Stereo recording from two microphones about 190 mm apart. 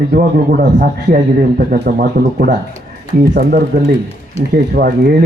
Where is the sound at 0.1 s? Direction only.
50° right (ahead or behind).